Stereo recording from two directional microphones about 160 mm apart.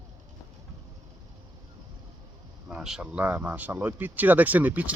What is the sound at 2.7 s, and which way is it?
Speech, 5° right (ahead or behind).